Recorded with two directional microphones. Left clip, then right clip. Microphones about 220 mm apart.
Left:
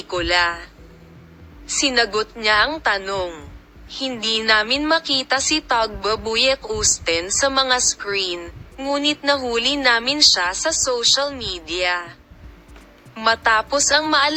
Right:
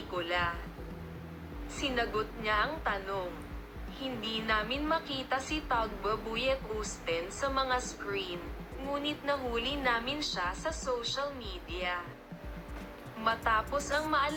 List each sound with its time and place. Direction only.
0.1 s a woman's voice: 50° left (ahead or behind)
1.6 s a woman's voice: 45° left (ahead or behind)
13.1 s a woman's voice: 50° left (ahead or behind)